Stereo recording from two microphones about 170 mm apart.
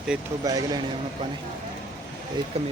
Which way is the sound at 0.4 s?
20° right (ahead or behind).